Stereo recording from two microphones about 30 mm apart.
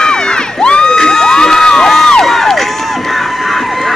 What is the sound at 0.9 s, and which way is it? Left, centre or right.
Crowd, centre.